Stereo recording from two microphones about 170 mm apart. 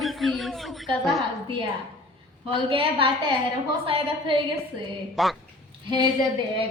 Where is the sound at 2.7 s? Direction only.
30° right (ahead or behind).